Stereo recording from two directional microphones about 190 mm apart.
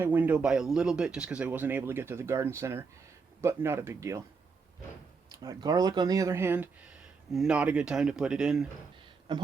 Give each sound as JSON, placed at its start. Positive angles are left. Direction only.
{"t": 0.0, "sound": "speech", "side_deg": -10}
{"t": 5.3, "sound": "speech", "side_deg": -20}